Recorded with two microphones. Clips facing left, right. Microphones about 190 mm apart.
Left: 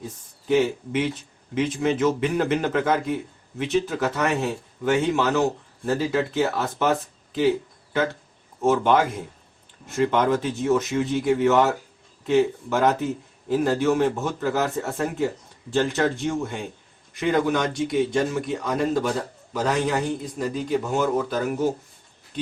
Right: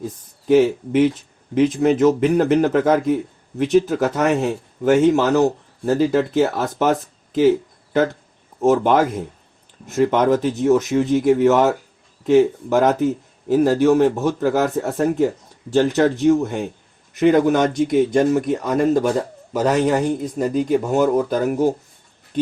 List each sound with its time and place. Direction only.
0.4 s speech: 40° right (ahead or behind)
8.6 s speech: 40° right (ahead or behind)